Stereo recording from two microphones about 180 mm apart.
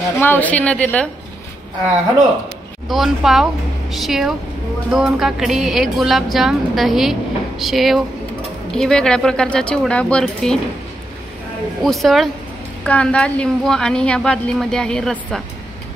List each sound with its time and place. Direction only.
0.2 s a woman's voice: 10° left (ahead or behind)
2.9 s speech: centre (ahead or behind)
11.8 s speech: centre (ahead or behind)